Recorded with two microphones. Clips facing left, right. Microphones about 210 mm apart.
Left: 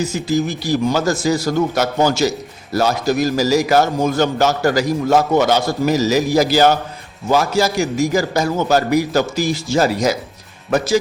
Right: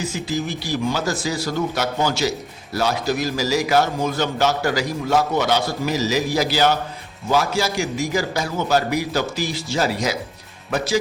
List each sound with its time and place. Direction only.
0.0 s a man's voice: 45° left (ahead or behind)